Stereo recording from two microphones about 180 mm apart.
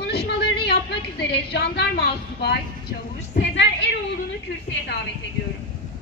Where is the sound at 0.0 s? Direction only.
65° left (ahead or behind).